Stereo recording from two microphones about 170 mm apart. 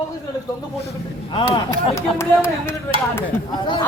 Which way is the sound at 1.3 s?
30° left (ahead or behind).